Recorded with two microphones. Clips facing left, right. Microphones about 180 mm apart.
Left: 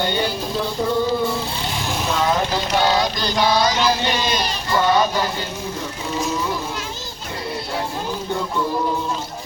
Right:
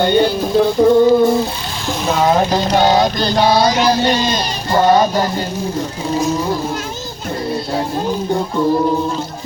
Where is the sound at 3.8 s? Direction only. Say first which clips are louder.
Right 6 dB; 40° right (ahead or behind).